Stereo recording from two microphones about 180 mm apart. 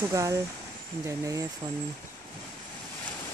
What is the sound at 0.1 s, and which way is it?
Speech, 20° right (ahead or behind).